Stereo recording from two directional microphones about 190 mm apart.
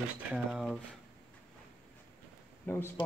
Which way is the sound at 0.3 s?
Centre (ahead or behind).